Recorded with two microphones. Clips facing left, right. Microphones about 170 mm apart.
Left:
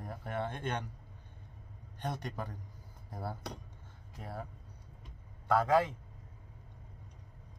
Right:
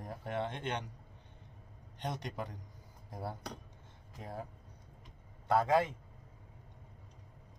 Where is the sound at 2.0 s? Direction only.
20° right (ahead or behind).